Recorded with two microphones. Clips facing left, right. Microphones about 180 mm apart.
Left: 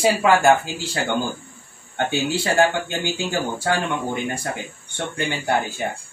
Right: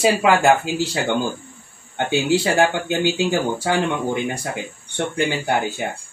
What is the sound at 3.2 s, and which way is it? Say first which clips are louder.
Speech: right 4 dB; 20° right (ahead or behind).